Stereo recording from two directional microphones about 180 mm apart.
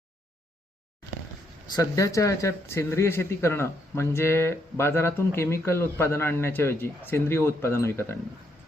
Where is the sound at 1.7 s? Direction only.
15° left (ahead or behind).